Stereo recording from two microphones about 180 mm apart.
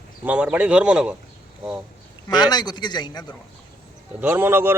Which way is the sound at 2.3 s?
25° left (ahead or behind).